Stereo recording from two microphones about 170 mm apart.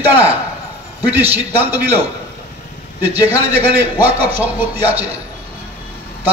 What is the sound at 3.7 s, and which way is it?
Speech, 10° right (ahead or behind).